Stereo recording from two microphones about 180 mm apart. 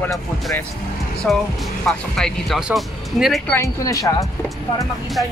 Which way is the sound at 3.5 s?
15° left (ahead or behind).